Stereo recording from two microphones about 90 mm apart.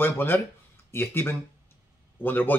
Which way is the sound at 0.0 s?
25° left (ahead or behind).